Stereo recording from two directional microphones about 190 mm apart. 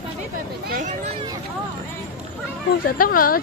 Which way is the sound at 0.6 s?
50° right (ahead or behind).